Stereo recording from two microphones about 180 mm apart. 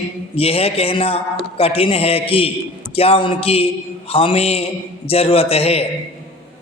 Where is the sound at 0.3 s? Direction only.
35° left (ahead or behind).